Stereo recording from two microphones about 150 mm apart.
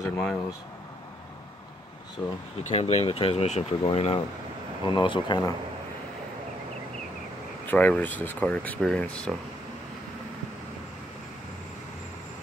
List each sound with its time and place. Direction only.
0.2 s speech: 5° left (ahead or behind)
2.7 s speech: 45° left (ahead or behind)
7.6 s speech: 10° left (ahead or behind)